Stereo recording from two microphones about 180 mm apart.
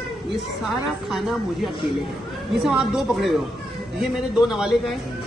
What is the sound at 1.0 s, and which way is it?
Speech, centre (ahead or behind).